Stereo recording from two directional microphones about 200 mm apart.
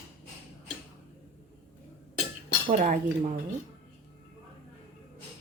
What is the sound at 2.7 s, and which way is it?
Speech, 40° right (ahead or behind).